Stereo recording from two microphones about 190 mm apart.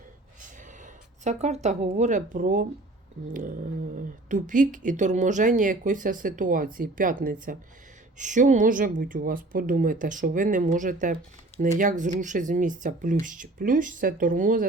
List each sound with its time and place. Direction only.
1.2 s speech: 35° right (ahead or behind)